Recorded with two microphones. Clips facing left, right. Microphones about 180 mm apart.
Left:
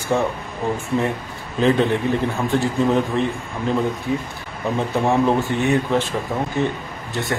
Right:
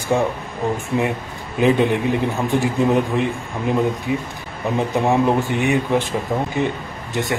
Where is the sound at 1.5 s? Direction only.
15° right (ahead or behind).